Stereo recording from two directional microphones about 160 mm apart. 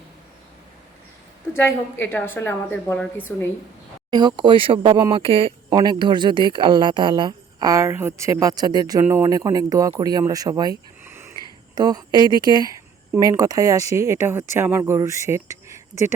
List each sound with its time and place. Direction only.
1.5 s a woman's voice: 15° left (ahead or behind)
4.1 s speech: 30° right (ahead or behind)
11.0 s a sound: 15° right (ahead or behind)
11.7 s speech: 25° right (ahead or behind)